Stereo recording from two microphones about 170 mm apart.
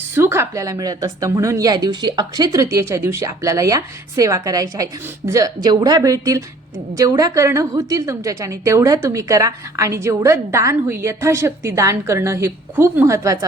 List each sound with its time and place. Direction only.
0.1 s a woman's voice: 15° right (ahead or behind)